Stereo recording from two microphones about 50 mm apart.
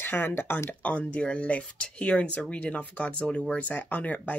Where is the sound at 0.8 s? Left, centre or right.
Left.